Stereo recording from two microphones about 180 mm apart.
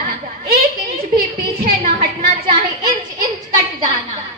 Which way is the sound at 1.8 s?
50° right (ahead or behind).